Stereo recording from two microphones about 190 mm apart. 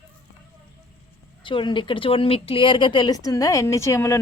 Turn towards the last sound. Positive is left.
turn(degrees=15)  # may be behind; listen again after turning